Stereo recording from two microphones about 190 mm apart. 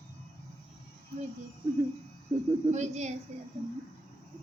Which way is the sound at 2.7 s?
40° right (ahead or behind).